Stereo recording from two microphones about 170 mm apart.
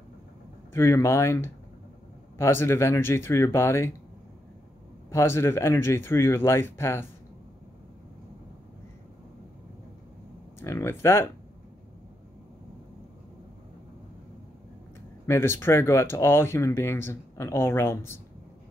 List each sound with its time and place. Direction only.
0.7 s speech: 15° left (ahead or behind)
5.1 s speech: 15° left (ahead or behind)
10.6 s speech: 15° left (ahead or behind)
15.2 s speech: 15° left (ahead or behind)